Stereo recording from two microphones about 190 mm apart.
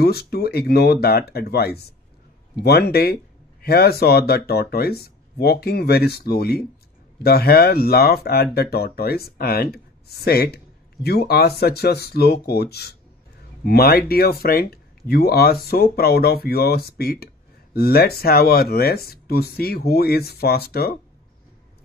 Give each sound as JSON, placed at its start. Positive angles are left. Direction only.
{"t": 0.0, "sound": "speech", "side_deg": 55}